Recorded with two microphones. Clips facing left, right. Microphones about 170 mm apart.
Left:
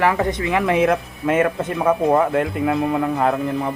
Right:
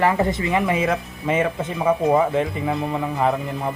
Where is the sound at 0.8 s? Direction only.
Centre (ahead or behind).